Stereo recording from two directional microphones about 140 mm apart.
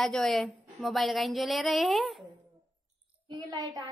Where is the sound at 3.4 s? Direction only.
30° right (ahead or behind).